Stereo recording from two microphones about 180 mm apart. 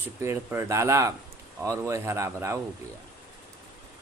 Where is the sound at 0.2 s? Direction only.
15° right (ahead or behind).